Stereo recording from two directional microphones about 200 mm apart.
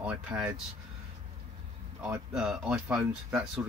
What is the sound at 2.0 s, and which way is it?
Speech, 5° right (ahead or behind).